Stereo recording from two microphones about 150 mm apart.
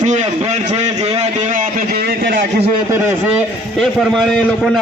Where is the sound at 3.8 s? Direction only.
Centre (ahead or behind).